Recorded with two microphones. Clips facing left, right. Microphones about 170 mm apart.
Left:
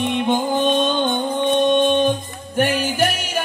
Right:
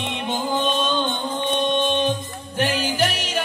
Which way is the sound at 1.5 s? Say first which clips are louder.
Left 6 dB; 50° left (ahead or behind).